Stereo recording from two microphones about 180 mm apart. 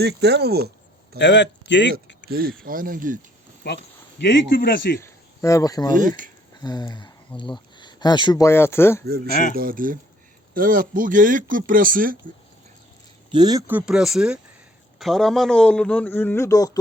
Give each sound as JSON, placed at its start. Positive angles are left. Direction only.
{"t": 0.0, "sound": "speech", "side_deg": -65}
{"t": 1.2, "sound": "speech", "side_deg": 80}
{"t": 2.3, "sound": "speech", "side_deg": -55}
{"t": 3.6, "sound": "speech", "side_deg": 65}
{"t": 4.9, "sound": "speech", "side_deg": 15}
{"t": 9.0, "sound": "speech", "side_deg": -60}
{"t": 13.3, "sound": "a man's voice", "side_deg": -20}
{"t": 13.7, "sound": "a man's voice", "side_deg": -5}